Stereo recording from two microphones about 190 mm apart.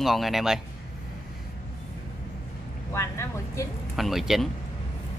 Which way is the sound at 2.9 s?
15° left (ahead or behind).